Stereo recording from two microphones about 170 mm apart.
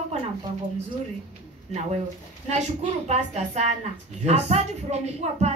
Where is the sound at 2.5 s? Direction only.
40° right (ahead or behind).